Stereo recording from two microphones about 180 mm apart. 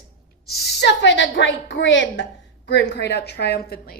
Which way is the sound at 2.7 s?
75° left (ahead or behind).